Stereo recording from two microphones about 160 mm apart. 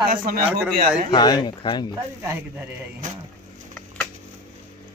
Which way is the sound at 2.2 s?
15° right (ahead or behind).